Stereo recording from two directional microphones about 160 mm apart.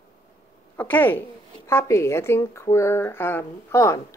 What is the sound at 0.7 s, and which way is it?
Speech, 10° left (ahead or behind).